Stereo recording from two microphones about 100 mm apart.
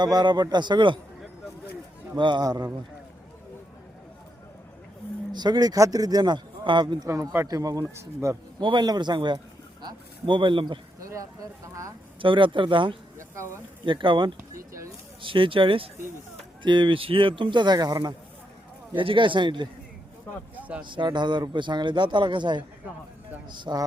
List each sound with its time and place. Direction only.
0.0 s a man's voice: 45° right (ahead or behind)
2.1 s a man's voice: 50° right (ahead or behind)
5.3 s speech: 45° right (ahead or behind)
7.1 s speech: 30° right (ahead or behind)
8.5 s a man's voice: 50° right (ahead or behind)
11.1 s speech: 30° right (ahead or behind)
12.2 s speech: 55° right (ahead or behind)
13.1 s insect: 25° right (ahead or behind)
13.8 s a man's voice: 55° right (ahead or behind)
18.9 s speech: 55° right (ahead or behind)
20.6 s a sound: 15° right (ahead or behind)
20.8 s a man's voice: 50° right (ahead or behind)